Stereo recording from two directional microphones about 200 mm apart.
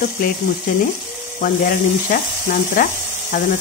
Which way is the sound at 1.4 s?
45° left (ahead or behind).